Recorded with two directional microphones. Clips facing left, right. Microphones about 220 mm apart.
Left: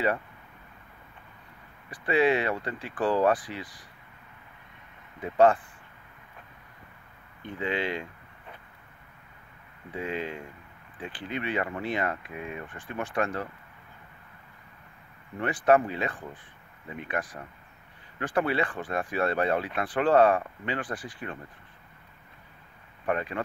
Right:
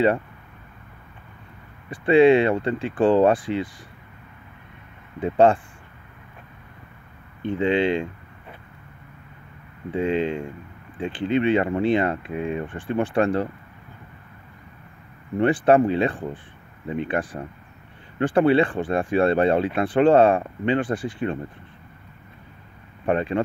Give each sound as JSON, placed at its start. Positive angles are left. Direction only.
{"t": 1.9, "sound": "speech", "side_deg": -25}
{"t": 5.2, "sound": "speech", "side_deg": -25}
{"t": 7.4, "sound": "speech", "side_deg": -25}
{"t": 9.8, "sound": "speech", "side_deg": -25}
{"t": 15.3, "sound": "speech", "side_deg": -30}
{"t": 23.0, "sound": "speech", "side_deg": -30}